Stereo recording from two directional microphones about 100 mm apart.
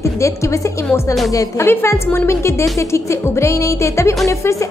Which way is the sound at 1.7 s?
25° left (ahead or behind).